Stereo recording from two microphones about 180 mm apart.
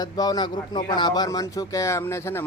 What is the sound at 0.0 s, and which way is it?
A man's voice, 20° left (ahead or behind).